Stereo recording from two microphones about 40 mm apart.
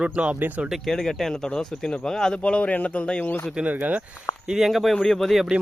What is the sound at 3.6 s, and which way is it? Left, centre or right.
Speech, right.